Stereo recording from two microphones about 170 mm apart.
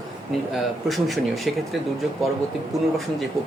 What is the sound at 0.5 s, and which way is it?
Speech, centre (ahead or behind).